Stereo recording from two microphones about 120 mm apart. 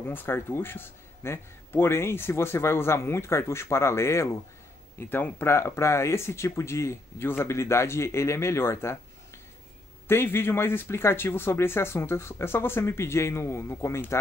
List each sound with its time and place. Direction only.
0.0 s a man's voice: 15° left (ahead or behind)
10.0 s a man's voice: 20° left (ahead or behind)